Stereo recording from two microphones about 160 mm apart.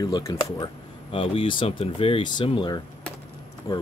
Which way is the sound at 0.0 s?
25° left (ahead or behind).